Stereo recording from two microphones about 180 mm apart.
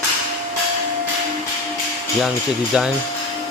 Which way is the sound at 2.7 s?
5° right (ahead or behind).